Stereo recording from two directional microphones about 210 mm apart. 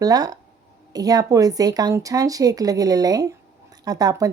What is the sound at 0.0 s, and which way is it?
Speech, 15° right (ahead or behind).